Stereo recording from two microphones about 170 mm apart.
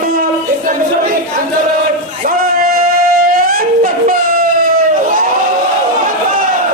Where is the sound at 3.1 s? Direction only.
60° right (ahead or behind).